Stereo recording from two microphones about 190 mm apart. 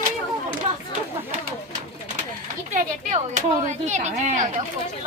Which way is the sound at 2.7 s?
40° right (ahead or behind).